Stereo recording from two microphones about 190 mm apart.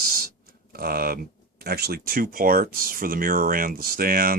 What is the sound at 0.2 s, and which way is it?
Speech, 50° right (ahead or behind).